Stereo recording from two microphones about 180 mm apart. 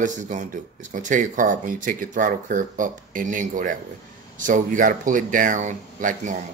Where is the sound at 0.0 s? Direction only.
45° right (ahead or behind).